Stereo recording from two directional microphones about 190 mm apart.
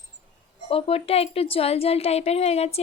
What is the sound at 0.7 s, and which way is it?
A woman's voice, 30° left (ahead or behind).